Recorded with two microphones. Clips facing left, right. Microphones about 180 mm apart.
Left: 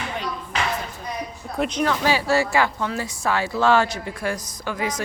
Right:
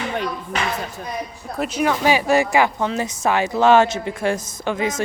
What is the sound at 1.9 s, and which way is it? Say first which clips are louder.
Speech: right 6 dB; 15° right (ahead or behind).